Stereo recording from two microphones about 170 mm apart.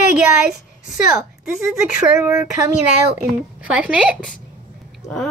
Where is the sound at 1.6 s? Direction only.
15° right (ahead or behind).